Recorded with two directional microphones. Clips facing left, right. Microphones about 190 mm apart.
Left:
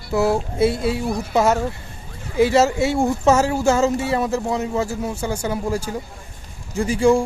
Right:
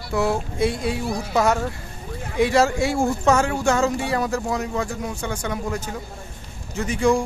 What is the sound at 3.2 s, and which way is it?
Speech, 5° left (ahead or behind).